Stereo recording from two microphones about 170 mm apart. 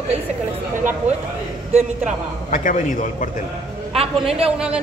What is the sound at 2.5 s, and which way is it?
Speech, 45° left (ahead or behind).